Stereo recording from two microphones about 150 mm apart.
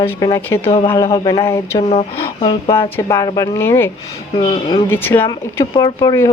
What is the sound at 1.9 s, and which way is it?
Speech, 35° left (ahead or behind).